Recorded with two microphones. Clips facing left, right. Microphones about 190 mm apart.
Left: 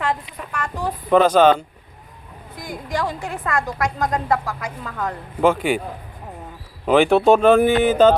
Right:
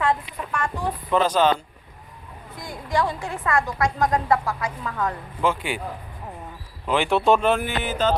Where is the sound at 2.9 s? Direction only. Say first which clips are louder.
Right 1 dB; 40° left (ahead or behind).